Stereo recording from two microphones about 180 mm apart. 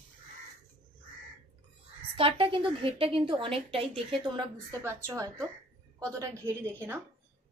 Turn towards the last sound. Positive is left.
turn(degrees=-15)  # may be behind; listen again after turning